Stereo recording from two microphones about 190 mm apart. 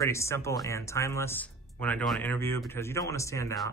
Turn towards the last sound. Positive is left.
turn(degrees=15)  # may be behind; listen again after turning